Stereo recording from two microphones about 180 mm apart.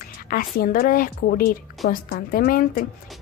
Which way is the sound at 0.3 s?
55° left (ahead or behind).